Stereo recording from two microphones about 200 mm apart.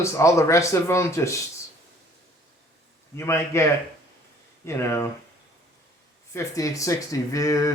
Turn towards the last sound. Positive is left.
turn(degrees=15)  # may be behind; listen again after turning